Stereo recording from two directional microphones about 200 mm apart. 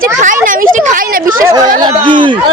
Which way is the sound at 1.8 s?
20° right (ahead or behind).